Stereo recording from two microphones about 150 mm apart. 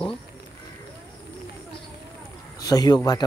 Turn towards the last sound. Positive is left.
turn(degrees=25)  # may be behind; listen again after turning